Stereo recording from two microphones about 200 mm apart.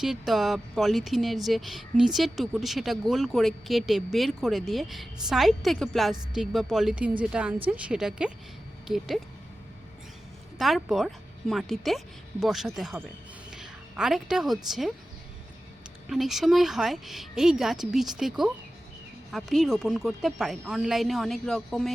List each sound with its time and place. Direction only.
0.0 s speech: centre (ahead or behind)
10.6 s speech: centre (ahead or behind)
16.0 s speech: centre (ahead or behind)